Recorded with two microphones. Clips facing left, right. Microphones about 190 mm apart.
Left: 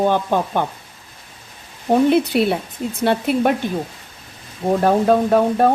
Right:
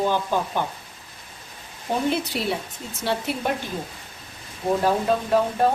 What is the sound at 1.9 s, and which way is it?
Speech, 60° left (ahead or behind).